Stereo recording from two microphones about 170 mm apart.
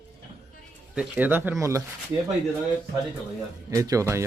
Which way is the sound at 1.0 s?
10° right (ahead or behind).